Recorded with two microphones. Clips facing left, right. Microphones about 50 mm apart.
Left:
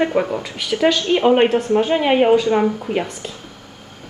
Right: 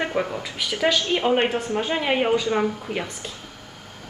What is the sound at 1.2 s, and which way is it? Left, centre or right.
A woman's voice, centre.